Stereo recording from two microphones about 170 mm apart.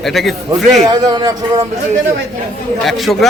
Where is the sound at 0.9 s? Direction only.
25° right (ahead or behind).